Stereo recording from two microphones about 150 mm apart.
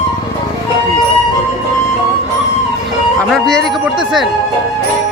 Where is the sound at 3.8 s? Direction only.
Centre (ahead or behind).